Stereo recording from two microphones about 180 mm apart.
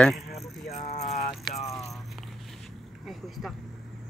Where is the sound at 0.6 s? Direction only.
35° left (ahead or behind).